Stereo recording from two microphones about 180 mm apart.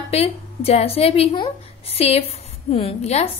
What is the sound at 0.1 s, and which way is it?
A woman's voice, 35° left (ahead or behind).